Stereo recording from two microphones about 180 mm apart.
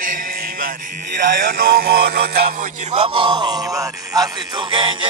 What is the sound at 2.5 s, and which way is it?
Music, 35° right (ahead or behind).